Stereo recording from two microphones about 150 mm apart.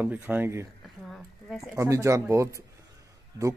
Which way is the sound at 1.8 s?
20° right (ahead or behind).